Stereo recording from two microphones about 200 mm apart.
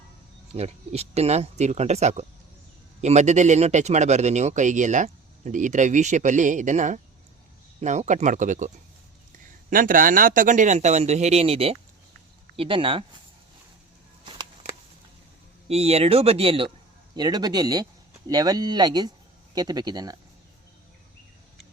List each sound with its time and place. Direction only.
0.5 s speech: 30° right (ahead or behind)
15.6 s speech: 30° right (ahead or behind)